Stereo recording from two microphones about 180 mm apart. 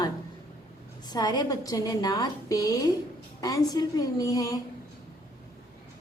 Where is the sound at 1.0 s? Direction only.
20° left (ahead or behind).